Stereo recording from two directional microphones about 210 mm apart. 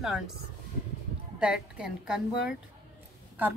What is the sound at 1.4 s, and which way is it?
A woman's voice, 5° right (ahead or behind).